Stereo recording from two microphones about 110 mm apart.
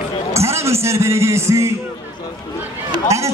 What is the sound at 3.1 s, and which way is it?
Speech, 25° right (ahead or behind).